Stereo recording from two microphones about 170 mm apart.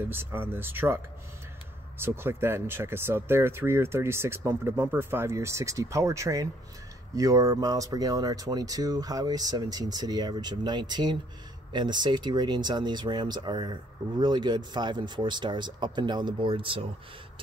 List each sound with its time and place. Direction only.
0.0 s speech: 10° right (ahead or behind); by 16.8 s 30° right (ahead or behind)